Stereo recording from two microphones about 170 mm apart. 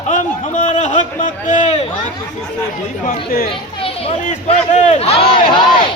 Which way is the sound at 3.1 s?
60° left (ahead or behind).